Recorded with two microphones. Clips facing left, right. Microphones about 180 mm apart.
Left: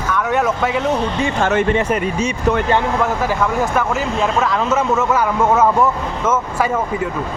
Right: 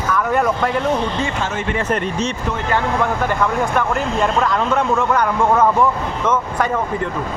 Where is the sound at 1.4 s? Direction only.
55° left (ahead or behind).